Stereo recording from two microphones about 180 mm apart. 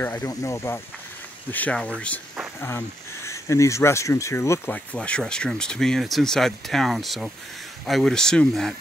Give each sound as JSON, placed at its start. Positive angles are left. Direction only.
{"t": 0.0, "sound": "speech", "side_deg": 15}
{"t": 3.3, "sound": "speech", "side_deg": 15}